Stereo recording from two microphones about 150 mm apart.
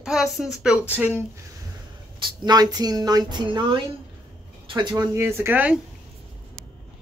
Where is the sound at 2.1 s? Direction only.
30° right (ahead or behind).